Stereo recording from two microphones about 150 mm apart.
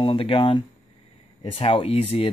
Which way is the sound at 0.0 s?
35° left (ahead or behind).